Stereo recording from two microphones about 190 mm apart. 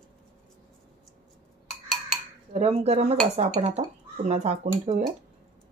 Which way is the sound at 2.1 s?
35° right (ahead or behind).